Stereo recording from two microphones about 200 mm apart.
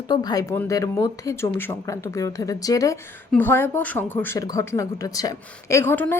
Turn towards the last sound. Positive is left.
turn(degrees=10)  # may be behind; listen again after turning